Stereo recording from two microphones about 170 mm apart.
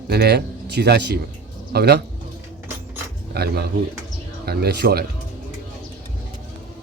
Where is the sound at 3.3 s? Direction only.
70° right (ahead or behind).